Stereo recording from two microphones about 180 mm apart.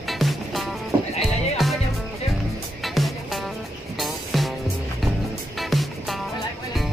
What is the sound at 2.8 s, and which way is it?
Music, centre (ahead or behind).